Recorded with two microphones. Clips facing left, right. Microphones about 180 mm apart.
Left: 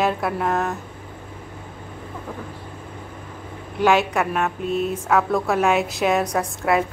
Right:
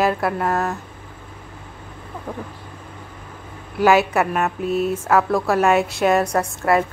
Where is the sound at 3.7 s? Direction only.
5° right (ahead or behind).